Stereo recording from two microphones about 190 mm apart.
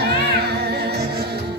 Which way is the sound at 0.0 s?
60° right (ahead or behind).